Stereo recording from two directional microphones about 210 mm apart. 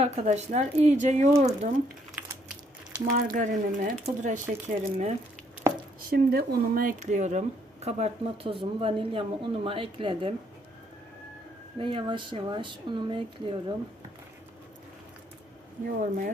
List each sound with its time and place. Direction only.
0.0 s speech: 30° right (ahead or behind)
3.2 s speech: 35° right (ahead or behind)
6.0 s speech: 45° right (ahead or behind); by 10.3 s 25° right (ahead or behind)
11.8 s speech: 25° right (ahead or behind)
15.9 s speech: 40° right (ahead or behind)